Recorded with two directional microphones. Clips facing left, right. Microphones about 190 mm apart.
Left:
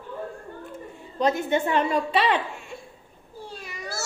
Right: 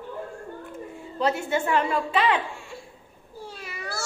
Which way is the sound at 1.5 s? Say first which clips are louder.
Left 1 dB; 20° left (ahead or behind).